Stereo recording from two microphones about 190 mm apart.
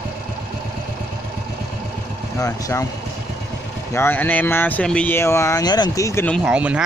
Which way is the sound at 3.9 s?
10° left (ahead or behind).